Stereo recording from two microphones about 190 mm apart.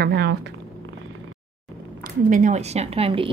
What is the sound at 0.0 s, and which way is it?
Speech, 60° right (ahead or behind).